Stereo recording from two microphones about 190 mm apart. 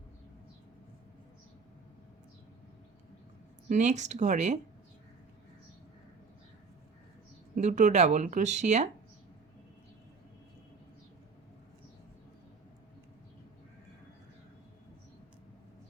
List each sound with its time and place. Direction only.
3.7 s speech: 40° right (ahead or behind)
7.5 s speech: 40° right (ahead or behind)